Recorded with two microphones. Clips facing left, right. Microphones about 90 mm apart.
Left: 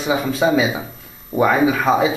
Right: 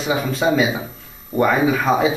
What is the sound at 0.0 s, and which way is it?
A man's voice, centre (ahead or behind).